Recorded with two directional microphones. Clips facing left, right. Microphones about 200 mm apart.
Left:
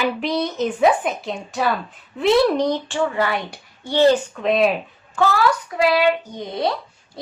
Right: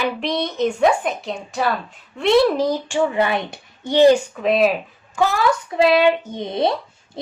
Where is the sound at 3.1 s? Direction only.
20° right (ahead or behind); by 5.2 s centre (ahead or behind).